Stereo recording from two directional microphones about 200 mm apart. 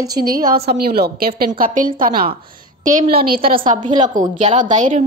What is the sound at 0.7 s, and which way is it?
A woman's voice, 50° right (ahead or behind).